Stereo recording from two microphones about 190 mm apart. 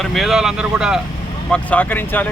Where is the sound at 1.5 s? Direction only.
10° left (ahead or behind).